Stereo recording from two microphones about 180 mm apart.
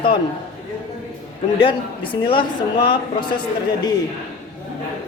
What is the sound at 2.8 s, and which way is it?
Speech, 25° left (ahead or behind).